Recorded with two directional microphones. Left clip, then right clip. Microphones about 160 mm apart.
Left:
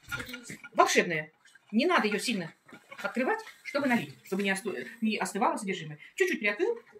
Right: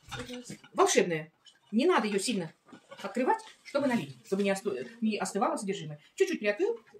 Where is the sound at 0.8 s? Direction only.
40° right (ahead or behind).